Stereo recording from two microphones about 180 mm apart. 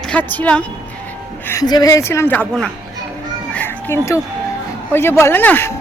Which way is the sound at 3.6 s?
15° left (ahead or behind).